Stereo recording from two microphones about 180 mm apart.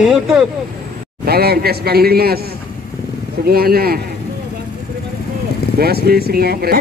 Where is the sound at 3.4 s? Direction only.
55° right (ahead or behind).